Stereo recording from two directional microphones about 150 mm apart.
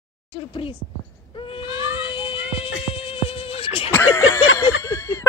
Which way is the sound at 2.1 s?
35° left (ahead or behind).